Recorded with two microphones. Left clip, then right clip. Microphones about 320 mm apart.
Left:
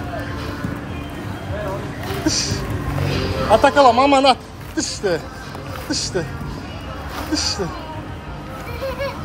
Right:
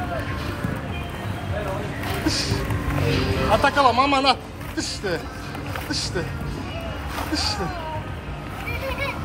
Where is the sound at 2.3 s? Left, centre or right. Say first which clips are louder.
Left 4 dB; centre.